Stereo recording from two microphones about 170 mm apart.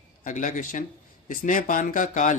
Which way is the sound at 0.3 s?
50° left (ahead or behind).